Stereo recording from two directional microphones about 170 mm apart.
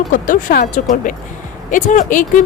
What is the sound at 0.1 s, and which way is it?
Speech, 50° left (ahead or behind).